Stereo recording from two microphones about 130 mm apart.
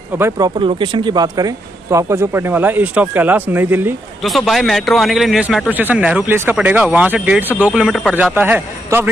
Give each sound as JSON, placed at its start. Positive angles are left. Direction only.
{"t": 0.4, "sound": "speech", "side_deg": -40}
{"t": 4.2, "sound": "a man's voice", "side_deg": 0}